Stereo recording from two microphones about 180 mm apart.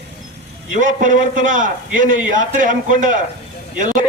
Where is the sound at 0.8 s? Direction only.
45° right (ahead or behind).